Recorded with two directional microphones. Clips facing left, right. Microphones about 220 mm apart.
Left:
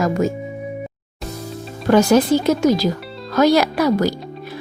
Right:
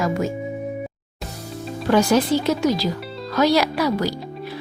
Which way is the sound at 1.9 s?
45° left (ahead or behind).